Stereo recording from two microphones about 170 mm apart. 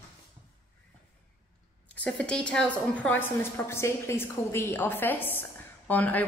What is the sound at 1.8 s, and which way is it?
A woman's voice, 5° left (ahead or behind).